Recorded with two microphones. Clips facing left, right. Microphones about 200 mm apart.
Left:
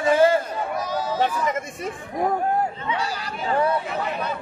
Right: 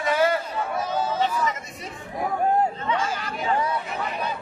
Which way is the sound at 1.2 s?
50° left (ahead or behind).